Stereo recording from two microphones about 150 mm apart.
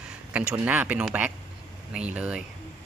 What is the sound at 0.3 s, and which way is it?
Speech, 10° right (ahead or behind).